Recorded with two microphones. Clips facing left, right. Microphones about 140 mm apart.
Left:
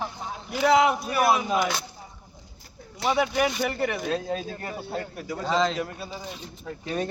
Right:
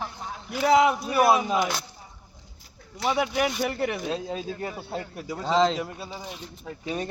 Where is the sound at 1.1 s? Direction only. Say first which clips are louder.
Right 2 dB; 30° right (ahead or behind).